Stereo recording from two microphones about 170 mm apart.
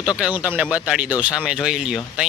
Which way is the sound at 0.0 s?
5° right (ahead or behind).